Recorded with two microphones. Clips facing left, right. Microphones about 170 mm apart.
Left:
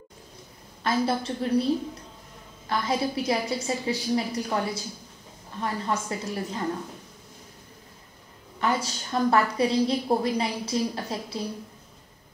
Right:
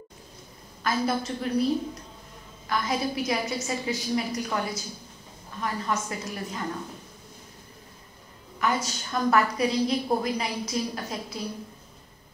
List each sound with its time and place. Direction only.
0.8 s a woman's voice: 30° left (ahead or behind)
2.7 s a woman's voice: 30° left (ahead or behind)
5.6 s a woman's voice: 30° left (ahead or behind)
8.5 s a woman's voice: 30° left (ahead or behind)